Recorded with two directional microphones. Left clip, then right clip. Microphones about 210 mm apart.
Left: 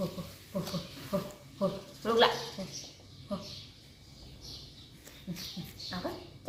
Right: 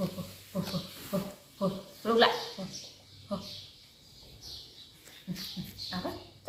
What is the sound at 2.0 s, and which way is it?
Dog, 5° left (ahead or behind).